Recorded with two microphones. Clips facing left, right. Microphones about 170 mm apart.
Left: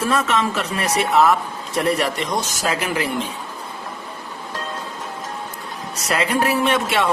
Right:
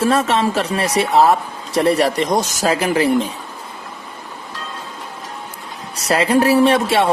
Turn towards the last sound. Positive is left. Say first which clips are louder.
# right 5 dB
turn(degrees=-30)  # may be behind; listen again after turning